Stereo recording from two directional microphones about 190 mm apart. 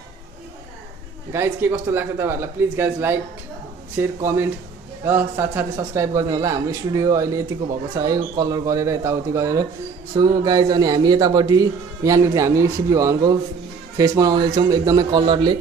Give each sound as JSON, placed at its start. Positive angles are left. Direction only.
{"t": 1.3, "sound": "speech", "side_deg": -15}